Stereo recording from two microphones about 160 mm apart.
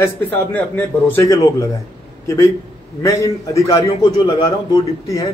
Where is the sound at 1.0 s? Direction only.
15° left (ahead or behind).